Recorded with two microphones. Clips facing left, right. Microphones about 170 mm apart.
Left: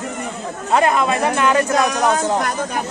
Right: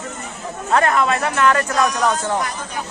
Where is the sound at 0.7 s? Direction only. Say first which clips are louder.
Left 1 dB; 15° left (ahead or behind).